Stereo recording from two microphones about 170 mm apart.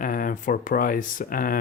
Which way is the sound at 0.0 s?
55° left (ahead or behind).